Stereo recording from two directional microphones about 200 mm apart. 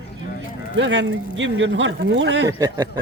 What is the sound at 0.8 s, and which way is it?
Speech, 65° right (ahead or behind).